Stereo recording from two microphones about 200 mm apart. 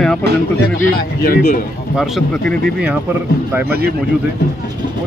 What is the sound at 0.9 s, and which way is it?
Speech, 50° left (ahead or behind).